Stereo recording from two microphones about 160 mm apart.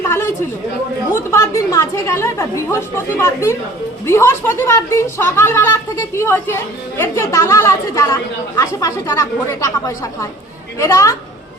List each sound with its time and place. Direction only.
1.1 s a woman's voice: 20° left (ahead or behind)